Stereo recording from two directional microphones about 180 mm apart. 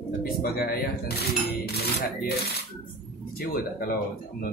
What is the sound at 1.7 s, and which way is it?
Speech, 60° left (ahead or behind).